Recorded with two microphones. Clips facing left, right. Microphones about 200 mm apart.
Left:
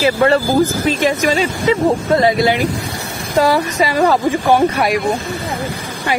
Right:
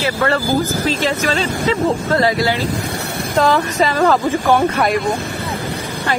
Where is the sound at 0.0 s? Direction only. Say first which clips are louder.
Left 5 dB; 20° left (ahead or behind).